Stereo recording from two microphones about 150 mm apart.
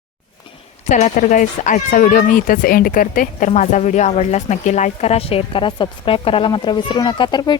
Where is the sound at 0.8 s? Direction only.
50° left (ahead or behind).